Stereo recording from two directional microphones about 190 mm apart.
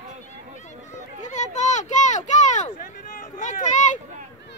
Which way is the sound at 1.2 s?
40° left (ahead or behind).